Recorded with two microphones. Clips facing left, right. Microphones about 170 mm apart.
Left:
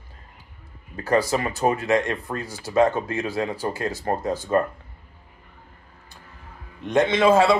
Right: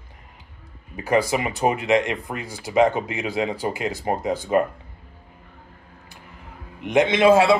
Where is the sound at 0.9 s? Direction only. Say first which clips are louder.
Right 1 dB; 15° right (ahead or behind).